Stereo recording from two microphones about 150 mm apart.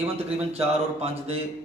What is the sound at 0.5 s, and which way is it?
Speech, 45° right (ahead or behind).